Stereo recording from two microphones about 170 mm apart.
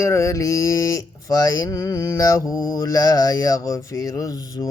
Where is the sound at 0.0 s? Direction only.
15° left (ahead or behind).